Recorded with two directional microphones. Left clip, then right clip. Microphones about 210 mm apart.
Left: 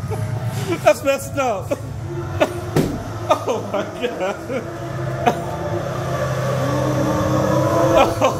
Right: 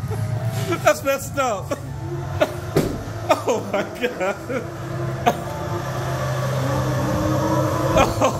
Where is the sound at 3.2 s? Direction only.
20° right (ahead or behind).